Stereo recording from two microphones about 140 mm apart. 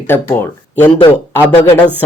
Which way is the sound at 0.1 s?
15° left (ahead or behind).